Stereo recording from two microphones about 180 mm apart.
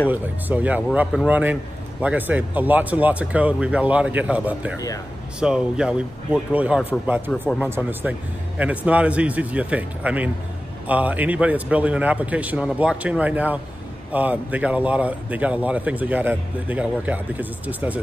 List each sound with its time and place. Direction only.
0.1 s speech: 10° right (ahead or behind)
4.7 s speech: 20° left (ahead or behind)
5.4 s speech: 5° right (ahead or behind)